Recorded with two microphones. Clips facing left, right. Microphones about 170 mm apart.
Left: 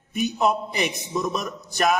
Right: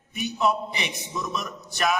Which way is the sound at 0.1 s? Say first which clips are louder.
Left 3 dB; 45° left (ahead or behind).